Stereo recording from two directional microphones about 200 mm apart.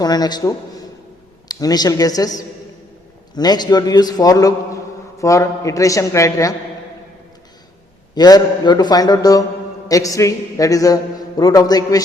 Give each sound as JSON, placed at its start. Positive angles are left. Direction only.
{"t": 0.0, "sound": "a man's voice", "side_deg": 20}
{"t": 8.1, "sound": "a man's voice", "side_deg": 20}